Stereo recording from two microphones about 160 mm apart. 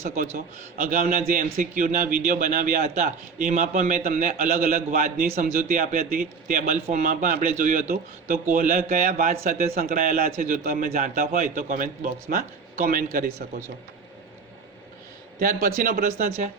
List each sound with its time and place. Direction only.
0.1 s a man's voice: 65° right (ahead or behind)
15.4 s a man's voice: 60° right (ahead or behind)